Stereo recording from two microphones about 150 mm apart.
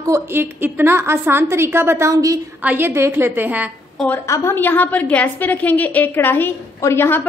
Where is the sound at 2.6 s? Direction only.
10° right (ahead or behind).